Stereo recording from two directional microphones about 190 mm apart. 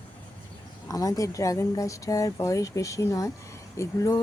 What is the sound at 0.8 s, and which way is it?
Speech, 20° left (ahead or behind).